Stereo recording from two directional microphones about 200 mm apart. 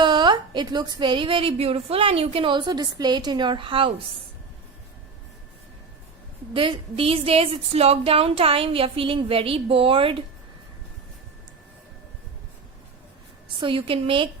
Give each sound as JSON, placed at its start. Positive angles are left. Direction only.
{"t": 0.0, "sound": "a woman's voice", "side_deg": -20}
{"t": 6.5, "sound": "a woman's voice", "side_deg": -25}
{"t": 13.6, "sound": "a woman's voice", "side_deg": -25}